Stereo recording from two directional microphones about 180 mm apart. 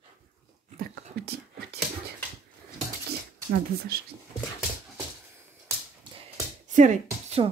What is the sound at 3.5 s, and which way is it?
Speech, 60° right (ahead or behind).